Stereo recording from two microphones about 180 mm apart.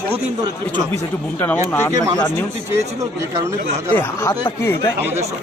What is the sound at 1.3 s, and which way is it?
Speech, 10° left (ahead or behind).